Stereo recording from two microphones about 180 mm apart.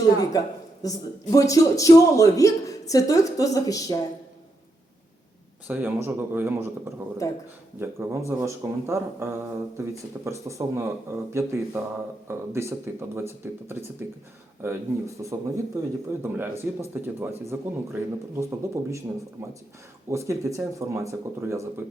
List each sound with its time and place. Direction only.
0.2 s speech: 20° left (ahead or behind)
5.6 s speech: 10° right (ahead or behind)
7.2 s speech: 20° left (ahead or behind)
7.8 s speech: 15° right (ahead or behind)